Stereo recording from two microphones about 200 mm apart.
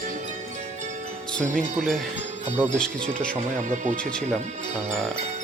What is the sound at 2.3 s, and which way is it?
Music, 35° right (ahead or behind).